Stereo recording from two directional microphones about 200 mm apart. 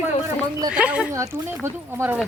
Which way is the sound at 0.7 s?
5° right (ahead or behind).